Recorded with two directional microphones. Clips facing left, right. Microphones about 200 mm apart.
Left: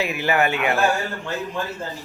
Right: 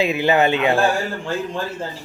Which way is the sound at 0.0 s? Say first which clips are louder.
Right 4 dB; 20° right (ahead or behind).